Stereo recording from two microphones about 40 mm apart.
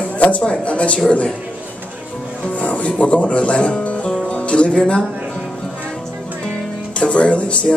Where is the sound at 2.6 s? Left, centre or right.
Left.